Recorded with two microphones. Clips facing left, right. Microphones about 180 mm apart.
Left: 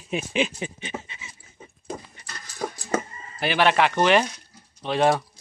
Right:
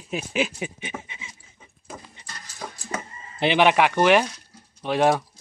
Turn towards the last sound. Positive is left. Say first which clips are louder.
# right 1 dB
turn(degrees=-10)  # may be behind; listen again after turning